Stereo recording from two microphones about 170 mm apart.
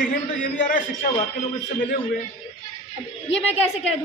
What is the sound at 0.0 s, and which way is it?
A man's voice, 55° left (ahead or behind).